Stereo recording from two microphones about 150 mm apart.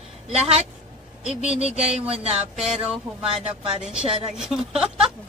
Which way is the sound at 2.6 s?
5° right (ahead or behind).